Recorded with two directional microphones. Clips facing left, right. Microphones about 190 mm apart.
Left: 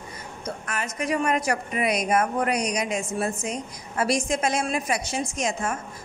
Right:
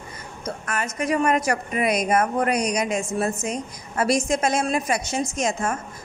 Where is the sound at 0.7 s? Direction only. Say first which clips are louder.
Right 3 dB; 45° right (ahead or behind).